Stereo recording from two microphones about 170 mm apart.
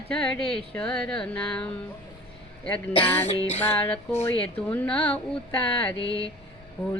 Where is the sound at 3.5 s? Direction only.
10° left (ahead or behind).